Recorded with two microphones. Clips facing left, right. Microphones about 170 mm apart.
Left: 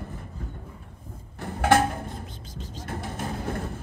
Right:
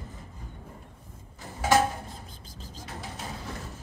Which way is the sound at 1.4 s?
60° left (ahead or behind).